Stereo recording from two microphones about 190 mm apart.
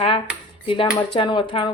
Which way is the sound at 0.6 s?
25° left (ahead or behind).